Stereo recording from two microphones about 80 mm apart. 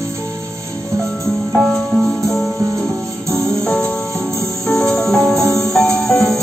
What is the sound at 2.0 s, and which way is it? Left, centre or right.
Music, centre.